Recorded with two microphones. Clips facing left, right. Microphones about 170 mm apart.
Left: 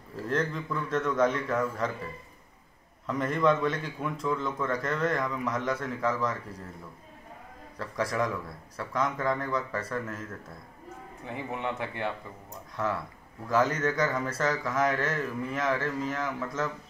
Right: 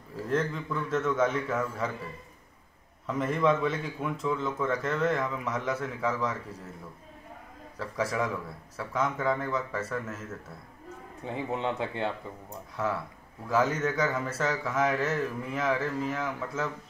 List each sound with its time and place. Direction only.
0.1 s a man's voice: centre (ahead or behind)
3.1 s a man's voice: 5° right (ahead or behind)
7.8 s a man's voice: 5° right (ahead or behind)
11.2 s speech: 20° right (ahead or behind)
12.8 s a man's voice: 5° right (ahead or behind)